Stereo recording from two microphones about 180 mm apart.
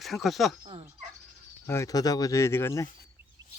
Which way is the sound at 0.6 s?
30° right (ahead or behind).